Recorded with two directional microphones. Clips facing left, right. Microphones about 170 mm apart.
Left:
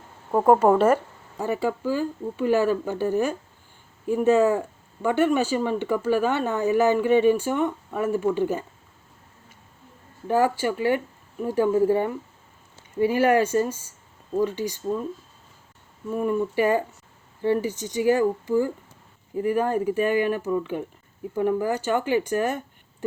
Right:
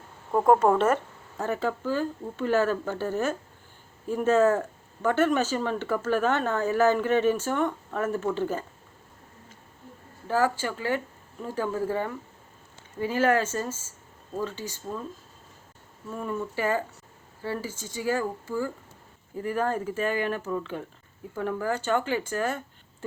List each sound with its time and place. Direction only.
0.3 s speech: 10° left (ahead or behind)
10.2 s speech: 15° left (ahead or behind)
16.0 s speech: 15° left (ahead or behind)